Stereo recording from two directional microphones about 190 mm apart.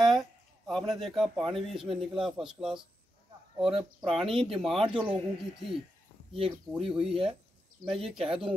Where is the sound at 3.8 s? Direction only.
30° right (ahead or behind).